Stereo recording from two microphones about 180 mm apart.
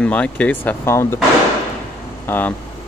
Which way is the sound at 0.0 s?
5° left (ahead or behind).